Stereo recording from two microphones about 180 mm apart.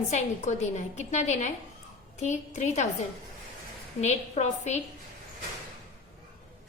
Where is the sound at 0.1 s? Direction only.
40° left (ahead or behind).